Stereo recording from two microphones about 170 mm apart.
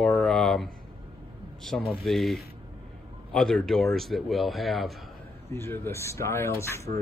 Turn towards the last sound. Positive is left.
turn(degrees=15)  # may be behind; listen again after turning